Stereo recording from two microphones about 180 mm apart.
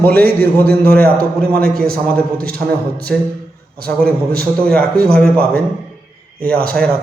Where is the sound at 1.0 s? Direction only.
55° right (ahead or behind).